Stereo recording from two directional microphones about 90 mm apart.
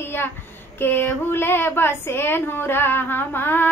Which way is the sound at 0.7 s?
20° left (ahead or behind).